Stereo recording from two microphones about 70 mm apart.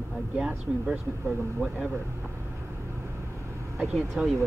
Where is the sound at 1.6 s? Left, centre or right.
Right.